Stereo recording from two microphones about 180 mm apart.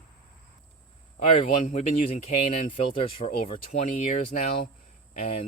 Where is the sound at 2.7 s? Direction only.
30° left (ahead or behind).